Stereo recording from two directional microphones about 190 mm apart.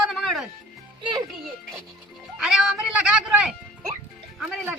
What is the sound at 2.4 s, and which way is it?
Speech, 5° right (ahead or behind).